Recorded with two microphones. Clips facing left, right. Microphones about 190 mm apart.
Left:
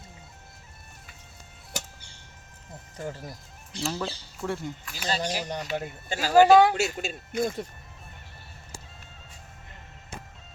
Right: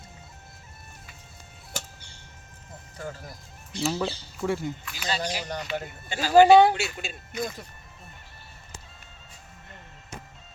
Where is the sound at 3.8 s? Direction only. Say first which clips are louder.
Right 4 dB; 5° right (ahead or behind).